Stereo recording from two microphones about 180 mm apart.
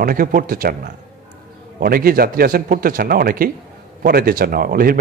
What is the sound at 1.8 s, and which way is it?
Speech, 55° right (ahead or behind).